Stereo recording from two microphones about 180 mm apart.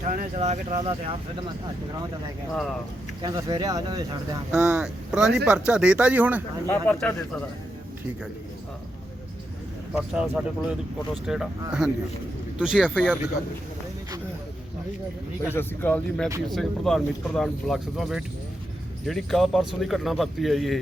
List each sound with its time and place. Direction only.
0.0 s speech: 45° right (ahead or behind); by 1.5 s 30° right (ahead or behind)
3.2 s speech: 20° right (ahead or behind)
4.5 s speech: 5° right (ahead or behind)
6.7 s speech: 10° left (ahead or behind)
9.9 s speech: 5° right (ahead or behind)
15.4 s speech: 10° left (ahead or behind)